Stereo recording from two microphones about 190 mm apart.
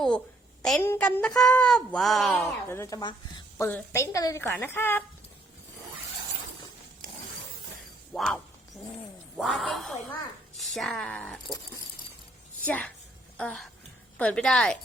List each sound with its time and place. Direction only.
0.8 s a woman's voice: 10° left (ahead or behind)
2.3 s a woman's voice: 15° left (ahead or behind)
3.7 s a woman's voice: 10° left (ahead or behind)
8.1 s music: centre (ahead or behind)
9.4 s a woman's voice: centre (ahead or behind)
12.6 s a woman's voice: 10° left (ahead or behind)